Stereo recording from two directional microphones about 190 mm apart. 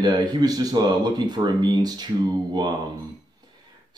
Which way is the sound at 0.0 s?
20° right (ahead or behind).